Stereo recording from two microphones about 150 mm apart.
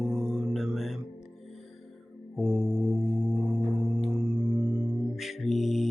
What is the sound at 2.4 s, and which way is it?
Music, 15° right (ahead or behind).